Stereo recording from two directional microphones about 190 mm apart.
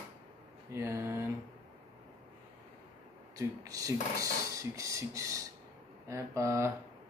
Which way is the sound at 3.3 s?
20° right (ahead or behind).